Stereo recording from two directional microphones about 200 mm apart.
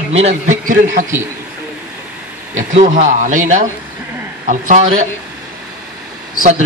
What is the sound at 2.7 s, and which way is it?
A man's voice, 35° right (ahead or behind).